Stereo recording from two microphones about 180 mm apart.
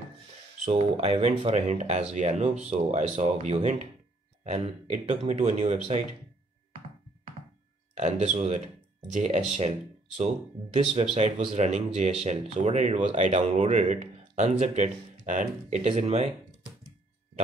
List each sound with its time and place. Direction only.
0.7 s speech: 35° right (ahead or behind)
7.9 s speech: 40° right (ahead or behind)